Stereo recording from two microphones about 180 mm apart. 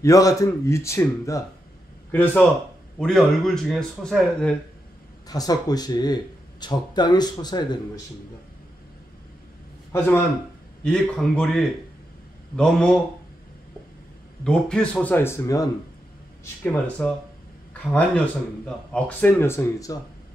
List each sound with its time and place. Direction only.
0.0 s speech: 20° left (ahead or behind)
3.0 s speech: centre (ahead or behind)
5.3 s speech: 20° left (ahead or behind)
9.9 s speech: 10° left (ahead or behind)
14.4 s speech: 5° left (ahead or behind)
16.6 s speech: 10° left (ahead or behind)